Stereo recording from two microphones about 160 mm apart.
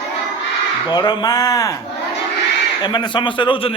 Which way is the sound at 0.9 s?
25° left (ahead or behind).